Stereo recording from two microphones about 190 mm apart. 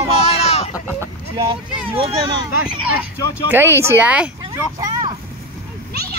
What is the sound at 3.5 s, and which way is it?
Speech, 10° right (ahead or behind).